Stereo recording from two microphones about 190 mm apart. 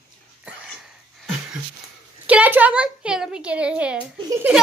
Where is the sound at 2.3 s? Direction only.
10° right (ahead or behind).